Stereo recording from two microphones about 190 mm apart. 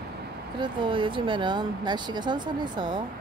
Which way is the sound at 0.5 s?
25° right (ahead or behind).